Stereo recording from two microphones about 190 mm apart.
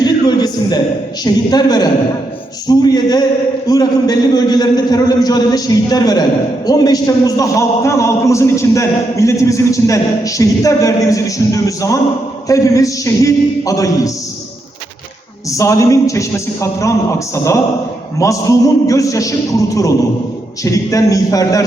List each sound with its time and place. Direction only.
0.0 s a sound: 20° left (ahead or behind)
1.2 s a man's voice: 20° left (ahead or behind)
15.4 s a man's voice: 15° left (ahead or behind)